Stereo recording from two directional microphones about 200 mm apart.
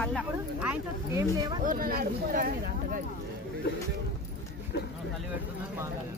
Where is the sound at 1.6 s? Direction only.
45° right (ahead or behind).